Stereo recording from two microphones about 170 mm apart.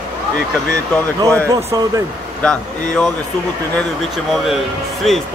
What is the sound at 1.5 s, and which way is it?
Speech, 20° right (ahead or behind).